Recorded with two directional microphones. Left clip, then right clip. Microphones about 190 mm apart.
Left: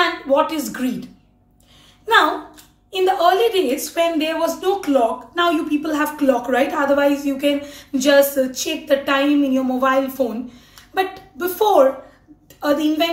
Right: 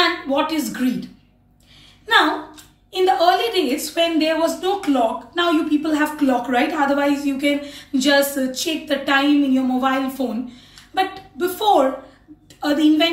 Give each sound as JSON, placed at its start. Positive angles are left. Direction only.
{"t": 0.0, "sound": "speech", "side_deg": 15}
{"t": 2.9, "sound": "speech", "side_deg": 15}